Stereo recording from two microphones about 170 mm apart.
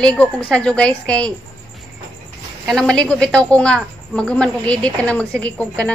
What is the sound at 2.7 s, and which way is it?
A woman's voice, 5° left (ahead or behind).